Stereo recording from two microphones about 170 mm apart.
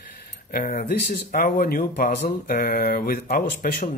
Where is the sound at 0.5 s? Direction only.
60° left (ahead or behind).